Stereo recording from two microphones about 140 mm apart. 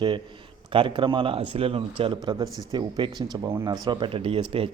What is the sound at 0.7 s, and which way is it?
A man's voice, 40° right (ahead or behind).